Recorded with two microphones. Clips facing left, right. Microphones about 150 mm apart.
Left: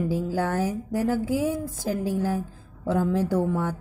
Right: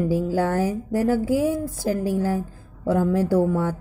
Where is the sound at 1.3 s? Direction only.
55° right (ahead or behind).